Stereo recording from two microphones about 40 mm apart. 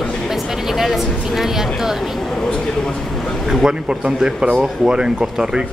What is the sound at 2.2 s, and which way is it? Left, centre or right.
Speech, centre.